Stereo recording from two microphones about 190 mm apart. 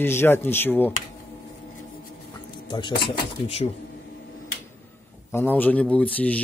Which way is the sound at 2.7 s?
25° left (ahead or behind).